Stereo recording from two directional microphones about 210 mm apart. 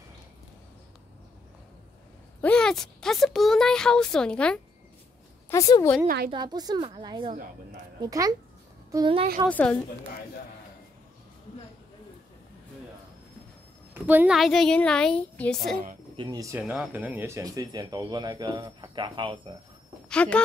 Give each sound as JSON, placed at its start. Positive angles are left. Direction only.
{"t": 2.4, "sound": "speech", "side_deg": 5}
{"t": 5.5, "sound": "a woman's voice", "side_deg": 15}
{"t": 6.0, "sound": "a woman's voice", "side_deg": -45}
{"t": 6.3, "sound": "speech", "side_deg": -20}
{"t": 9.5, "sound": "a woman's voice", "side_deg": 5}
{"t": 13.9, "sound": "speech", "side_deg": -10}
{"t": 16.2, "sound": "speech", "side_deg": -15}
{"t": 20.1, "sound": "speech", "side_deg": 5}